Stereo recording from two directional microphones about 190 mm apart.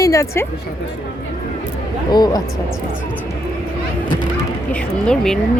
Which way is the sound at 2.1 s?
20° left (ahead or behind).